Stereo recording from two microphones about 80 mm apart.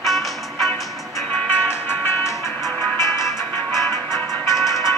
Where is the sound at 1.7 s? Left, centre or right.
Left.